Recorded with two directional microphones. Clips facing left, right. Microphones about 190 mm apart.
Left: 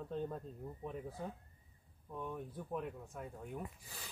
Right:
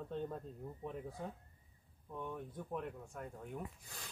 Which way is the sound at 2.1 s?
Centre (ahead or behind).